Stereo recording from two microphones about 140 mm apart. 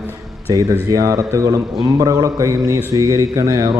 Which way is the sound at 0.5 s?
25° right (ahead or behind).